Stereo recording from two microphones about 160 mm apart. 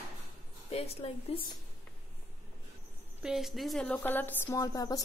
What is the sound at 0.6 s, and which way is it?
Speech, 40° left (ahead or behind).